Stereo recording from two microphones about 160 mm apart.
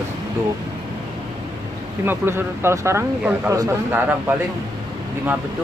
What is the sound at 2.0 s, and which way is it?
Speech, 15° right (ahead or behind).